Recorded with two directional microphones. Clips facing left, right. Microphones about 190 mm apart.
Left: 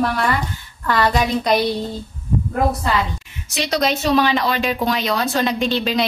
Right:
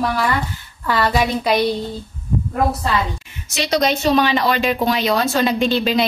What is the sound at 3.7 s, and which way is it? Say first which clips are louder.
A woman's voice: right 2 dB; centre (ahead or behind).